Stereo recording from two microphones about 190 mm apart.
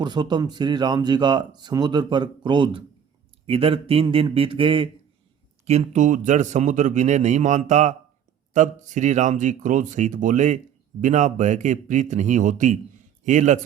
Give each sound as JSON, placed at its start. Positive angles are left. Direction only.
{"t": 0.0, "sound": "speech", "side_deg": -25}